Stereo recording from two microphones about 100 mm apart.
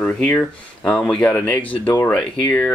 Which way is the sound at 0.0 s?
10° left (ahead or behind).